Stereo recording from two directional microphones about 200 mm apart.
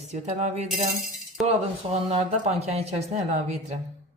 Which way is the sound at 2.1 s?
30° right (ahead or behind).